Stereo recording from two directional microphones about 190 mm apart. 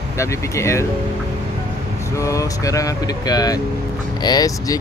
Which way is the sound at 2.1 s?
15° left (ahead or behind).